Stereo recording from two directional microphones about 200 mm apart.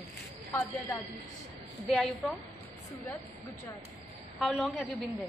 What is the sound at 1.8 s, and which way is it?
Speech, centre (ahead or behind).